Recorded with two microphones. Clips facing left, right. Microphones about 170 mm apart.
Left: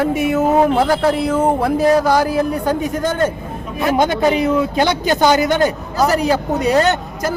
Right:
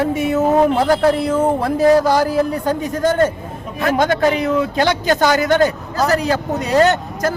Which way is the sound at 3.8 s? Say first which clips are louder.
Even; 15° left (ahead or behind).